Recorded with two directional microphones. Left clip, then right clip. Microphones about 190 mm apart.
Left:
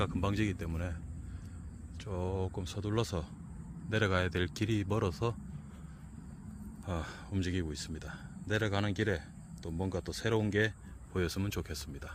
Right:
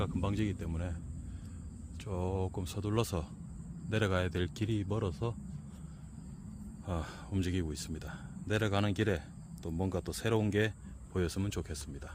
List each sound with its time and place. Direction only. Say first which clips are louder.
0.0 s speech: left 2 dB; 5° left (ahead or behind)
2.0 s speech: even; 15° right (ahead or behind)
3.8 s speech: left 1 dB; 5° right (ahead or behind); by 5.3 s 10° left (ahead or behind)
6.8 s speech: even; 10° right (ahead or behind)